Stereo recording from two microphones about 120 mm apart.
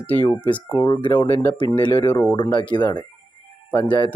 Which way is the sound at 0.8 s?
40° left (ahead or behind).